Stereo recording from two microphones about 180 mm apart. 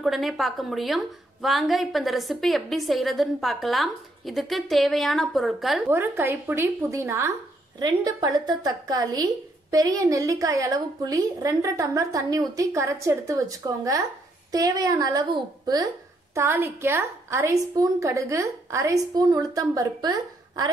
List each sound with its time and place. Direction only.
0.0 s a woman's voice: centre (ahead or behind)
5.9 s a woman's voice: 10° right (ahead or behind)